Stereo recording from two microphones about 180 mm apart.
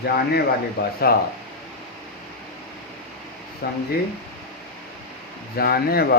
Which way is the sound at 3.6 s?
60° left (ahead or behind).